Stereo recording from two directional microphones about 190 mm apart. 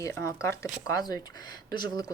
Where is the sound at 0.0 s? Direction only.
15° left (ahead or behind).